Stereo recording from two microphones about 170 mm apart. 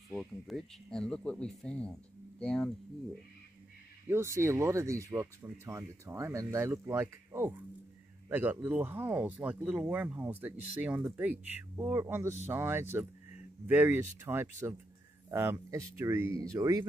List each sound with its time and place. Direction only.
0.1 s speech: centre (ahead or behind)
4.1 s a man's voice: 15° right (ahead or behind)